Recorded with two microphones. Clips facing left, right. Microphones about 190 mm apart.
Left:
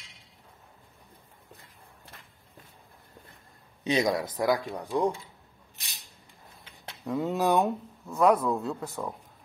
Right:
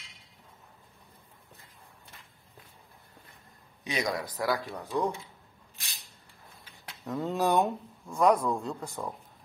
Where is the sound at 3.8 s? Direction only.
25° left (ahead or behind).